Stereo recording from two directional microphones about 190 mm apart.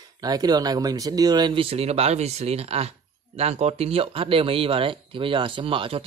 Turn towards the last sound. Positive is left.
turn(degrees=-30)  # may be behind; listen again after turning